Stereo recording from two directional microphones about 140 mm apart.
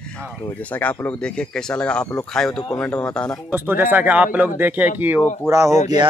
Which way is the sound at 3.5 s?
15° right (ahead or behind).